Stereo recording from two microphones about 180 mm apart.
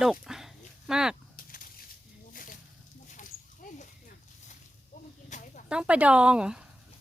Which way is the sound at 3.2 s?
45° left (ahead or behind).